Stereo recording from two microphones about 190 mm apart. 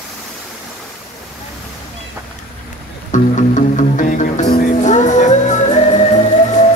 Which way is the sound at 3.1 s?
40° left (ahead or behind).